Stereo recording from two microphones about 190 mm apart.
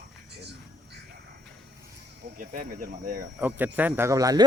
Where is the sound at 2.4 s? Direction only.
45° right (ahead or behind).